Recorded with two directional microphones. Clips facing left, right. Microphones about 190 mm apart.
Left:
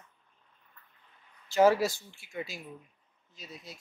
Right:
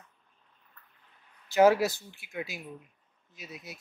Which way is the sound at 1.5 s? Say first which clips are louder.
Right 2 dB; centre (ahead or behind).